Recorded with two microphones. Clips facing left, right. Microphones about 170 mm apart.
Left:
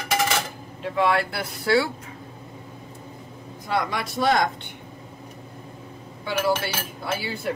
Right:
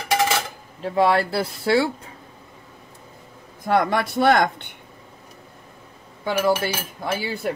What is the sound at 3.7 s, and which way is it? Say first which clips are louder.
Speech: right 6 dB; 55° right (ahead or behind).